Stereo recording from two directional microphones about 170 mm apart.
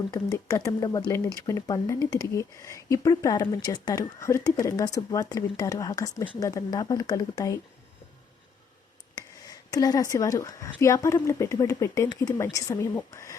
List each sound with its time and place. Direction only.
0.1 s speech: 15° left (ahead or behind)
9.1 s speech: 20° left (ahead or behind)